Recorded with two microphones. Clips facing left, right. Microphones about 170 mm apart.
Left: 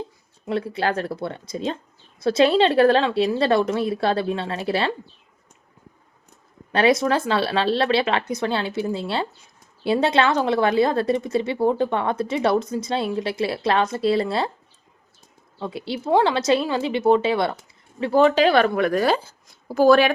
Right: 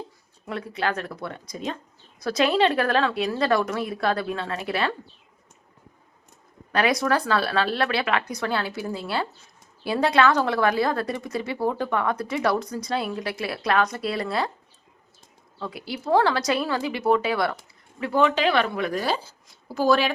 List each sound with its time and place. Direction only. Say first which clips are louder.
0.4 s speech: left 4 dB; 30° left (ahead or behind)
6.7 s speech: left 4 dB; 25° left (ahead or behind)
15.5 s a woman's voice: left 4 dB; 25° left (ahead or behind); by 20.1 s 50° left (ahead or behind)